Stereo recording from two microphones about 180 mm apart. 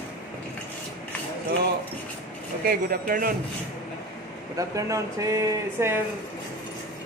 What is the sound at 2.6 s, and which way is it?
Speech, 55° right (ahead or behind).